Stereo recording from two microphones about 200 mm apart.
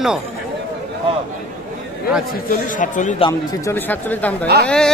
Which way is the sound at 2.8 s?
40° left (ahead or behind).